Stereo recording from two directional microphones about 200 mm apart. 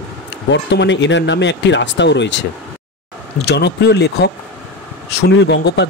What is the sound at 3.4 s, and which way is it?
Speech, 55° left (ahead or behind).